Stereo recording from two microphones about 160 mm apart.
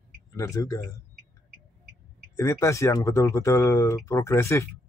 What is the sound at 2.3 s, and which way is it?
Speech, 20° left (ahead or behind).